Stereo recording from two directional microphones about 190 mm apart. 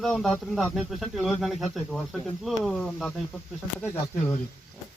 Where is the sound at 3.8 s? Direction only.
15° left (ahead or behind).